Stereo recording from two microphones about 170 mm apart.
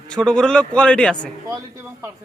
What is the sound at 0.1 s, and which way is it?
A man's voice, 5° left (ahead or behind).